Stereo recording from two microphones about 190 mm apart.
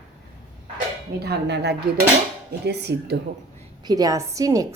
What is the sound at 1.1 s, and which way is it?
A woman's voice, 60° right (ahead or behind).